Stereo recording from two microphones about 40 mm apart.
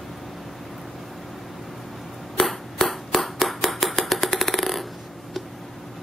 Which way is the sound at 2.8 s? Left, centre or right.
Centre.